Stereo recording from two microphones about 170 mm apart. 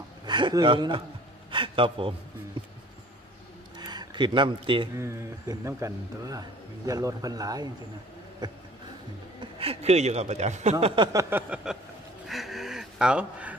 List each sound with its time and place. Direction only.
0.2 s a man's voice: 25° right (ahead or behind)
3.7 s a sound: 25° right (ahead or behind)
4.9 s a man's voice: 15° right (ahead or behind); by 11.1 s 35° right (ahead or behind)
11.1 s speech: 10° right (ahead or behind)
12.3 s gasp: centre (ahead or behind)